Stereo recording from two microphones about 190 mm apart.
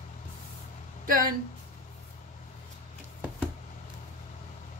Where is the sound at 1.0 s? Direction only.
45° right (ahead or behind).